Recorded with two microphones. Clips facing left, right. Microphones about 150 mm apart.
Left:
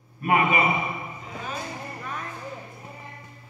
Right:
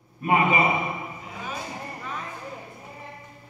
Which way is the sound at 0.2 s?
25° right (ahead or behind).